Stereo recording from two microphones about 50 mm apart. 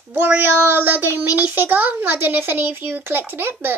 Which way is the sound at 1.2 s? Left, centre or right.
Right.